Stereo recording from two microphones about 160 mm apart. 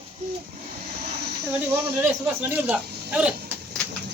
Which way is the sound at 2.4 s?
10° right (ahead or behind).